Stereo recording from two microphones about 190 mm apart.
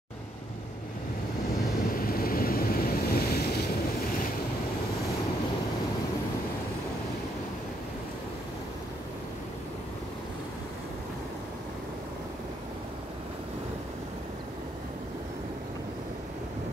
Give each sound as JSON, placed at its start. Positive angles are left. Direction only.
{"t": 2.0, "sound": "waves", "side_deg": 50}